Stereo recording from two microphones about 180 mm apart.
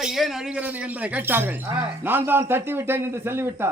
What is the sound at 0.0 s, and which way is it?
A man's voice, centre (ahead or behind).